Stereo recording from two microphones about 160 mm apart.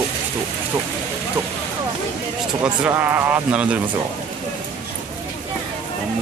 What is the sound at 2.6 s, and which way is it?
Speech, 10° right (ahead or behind).